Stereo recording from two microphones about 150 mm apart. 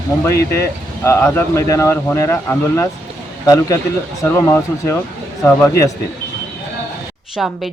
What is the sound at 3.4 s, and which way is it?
Speech, 20° left (ahead or behind).